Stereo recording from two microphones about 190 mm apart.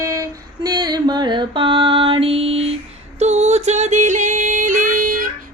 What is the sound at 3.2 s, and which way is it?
Music, 35° right (ahead or behind).